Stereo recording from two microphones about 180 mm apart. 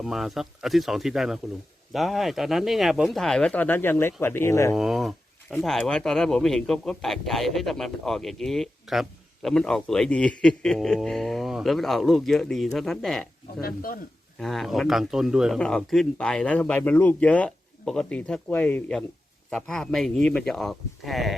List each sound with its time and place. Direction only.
0.0 s speech: centre (ahead or behind); by 4.7 s 15° left (ahead or behind)
4.7 s speech: centre (ahead or behind)
13.6 s speech: 55° left (ahead or behind)
14.3 s speech: centre (ahead or behind)